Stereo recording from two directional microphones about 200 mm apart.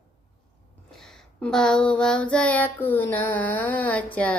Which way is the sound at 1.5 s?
5° left (ahead or behind).